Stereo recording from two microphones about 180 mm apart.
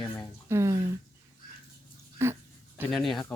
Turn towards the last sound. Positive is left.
turn(degrees=0)  # may be behind; listen again after turning